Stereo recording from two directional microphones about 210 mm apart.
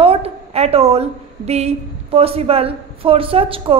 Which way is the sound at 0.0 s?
30° right (ahead or behind).